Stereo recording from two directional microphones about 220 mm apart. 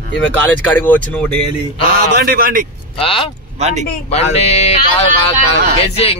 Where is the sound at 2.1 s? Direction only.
45° right (ahead or behind).